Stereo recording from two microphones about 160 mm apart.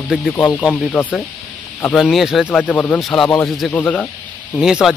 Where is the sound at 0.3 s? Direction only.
5° left (ahead or behind).